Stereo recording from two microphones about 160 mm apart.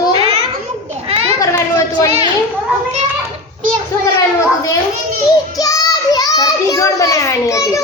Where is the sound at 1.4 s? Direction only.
20° left (ahead or behind).